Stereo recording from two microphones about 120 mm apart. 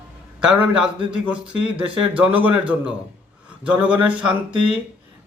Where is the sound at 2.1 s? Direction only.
10° right (ahead or behind).